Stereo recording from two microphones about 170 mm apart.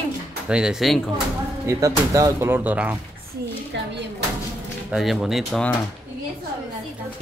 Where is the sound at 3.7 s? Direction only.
90° right.